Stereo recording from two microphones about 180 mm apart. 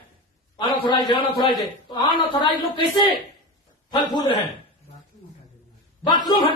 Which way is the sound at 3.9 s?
25° left (ahead or behind).